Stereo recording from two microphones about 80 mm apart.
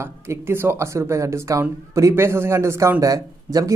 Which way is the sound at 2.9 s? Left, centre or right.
Right.